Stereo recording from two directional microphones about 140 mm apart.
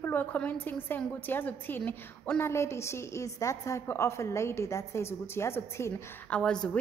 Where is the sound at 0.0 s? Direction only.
15° left (ahead or behind).